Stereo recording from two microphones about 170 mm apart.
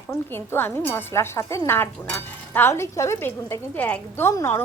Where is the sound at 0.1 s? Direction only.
15° left (ahead or behind).